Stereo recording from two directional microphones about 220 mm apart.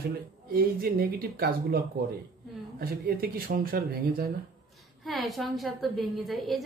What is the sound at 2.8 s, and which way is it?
Speech, 45° right (ahead or behind).